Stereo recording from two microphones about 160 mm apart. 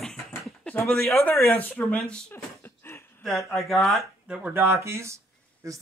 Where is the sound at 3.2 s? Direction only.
Centre (ahead or behind).